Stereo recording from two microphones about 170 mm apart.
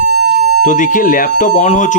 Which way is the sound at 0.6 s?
50° left (ahead or behind).